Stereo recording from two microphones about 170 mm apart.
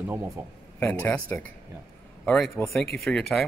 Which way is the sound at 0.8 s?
10° left (ahead or behind).